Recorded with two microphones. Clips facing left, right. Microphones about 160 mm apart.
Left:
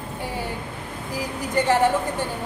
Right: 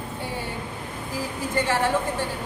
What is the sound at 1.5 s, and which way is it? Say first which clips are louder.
Speech: left 5 dB; 20° left (ahead or behind).